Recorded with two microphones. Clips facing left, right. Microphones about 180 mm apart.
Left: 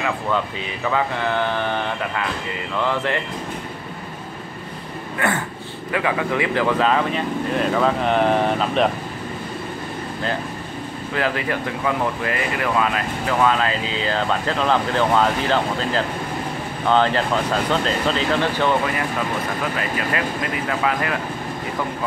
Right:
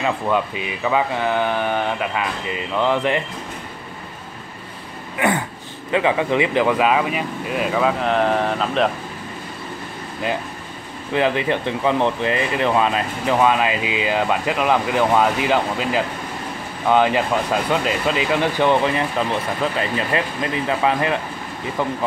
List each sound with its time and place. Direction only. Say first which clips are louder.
0.8 s speech: right 2 dB; 15° right (ahead or behind)
5.2 s speech: right 3 dB; 15° right (ahead or behind); by 8.9 s centre (ahead or behind)
11.1 s speech: right 4 dB; 20° right (ahead or behind)